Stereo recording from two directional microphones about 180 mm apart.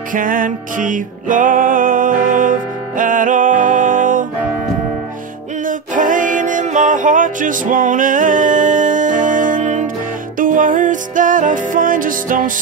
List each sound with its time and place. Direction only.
0.1 s music: 50° right (ahead or behind)
5.7 s music: 45° right (ahead or behind)